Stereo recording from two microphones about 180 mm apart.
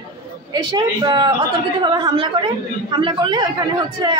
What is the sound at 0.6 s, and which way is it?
A man's voice, 25° right (ahead or behind).